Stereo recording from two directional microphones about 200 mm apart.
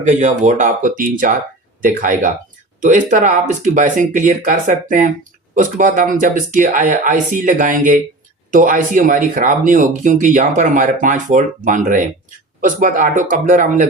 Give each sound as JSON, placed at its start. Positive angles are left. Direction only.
{"t": 0.0, "sound": "speech", "side_deg": -35}